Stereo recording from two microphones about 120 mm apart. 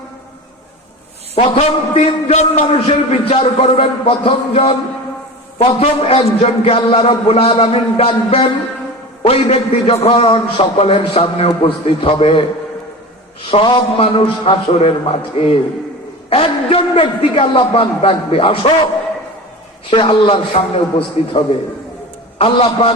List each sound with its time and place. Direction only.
1.4 s a man's voice: 55° left (ahead or behind)
2.7 s a man's voice: 55° left (ahead or behind)
19.9 s a man's voice: 45° left (ahead or behind)